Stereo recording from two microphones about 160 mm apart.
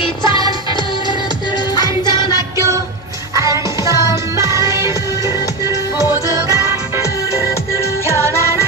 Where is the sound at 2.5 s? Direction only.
20° right (ahead or behind).